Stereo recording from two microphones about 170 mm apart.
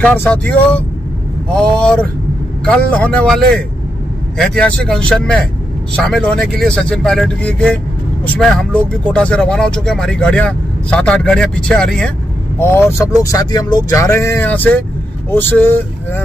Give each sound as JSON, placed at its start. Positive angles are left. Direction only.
{"t": 0.0, "sound": "speech", "side_deg": 10}